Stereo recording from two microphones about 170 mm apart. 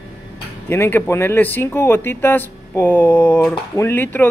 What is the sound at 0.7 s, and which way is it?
A man's voice, 15° left (ahead or behind).